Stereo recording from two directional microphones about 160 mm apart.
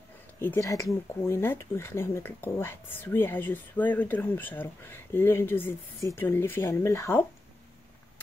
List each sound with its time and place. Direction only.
0.4 s speech: 15° left (ahead or behind)